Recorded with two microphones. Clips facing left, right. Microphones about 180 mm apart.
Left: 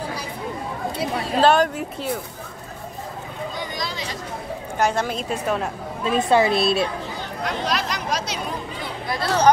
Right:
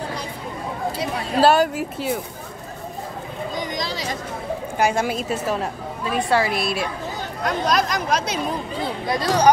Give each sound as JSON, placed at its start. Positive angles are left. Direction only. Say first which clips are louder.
{"t": 1.4, "sound": "a woman's voice", "louder": "right 1 dB", "side_deg": -5}
{"t": 4.7, "sound": "a woman's voice", "louder": "right 1 dB", "side_deg": -10}
{"t": 6.0, "sound": "speech", "louder": "left 3 dB", "side_deg": 20}
{"t": 7.4, "sound": "speech", "louder": "right 4 dB", "side_deg": -45}
{"t": 9.0, "sound": "speech", "louder": "right 1 dB", "side_deg": -20}